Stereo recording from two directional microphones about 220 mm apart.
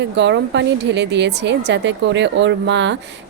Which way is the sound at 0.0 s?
55° right (ahead or behind).